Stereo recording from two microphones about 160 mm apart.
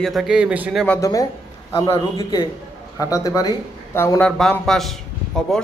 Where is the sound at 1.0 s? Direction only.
20° left (ahead or behind).